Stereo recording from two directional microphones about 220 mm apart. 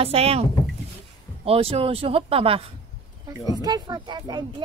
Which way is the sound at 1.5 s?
25° right (ahead or behind).